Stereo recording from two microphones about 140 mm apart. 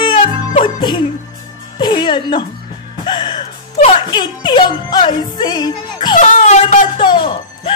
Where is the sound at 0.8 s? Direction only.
30° left (ahead or behind).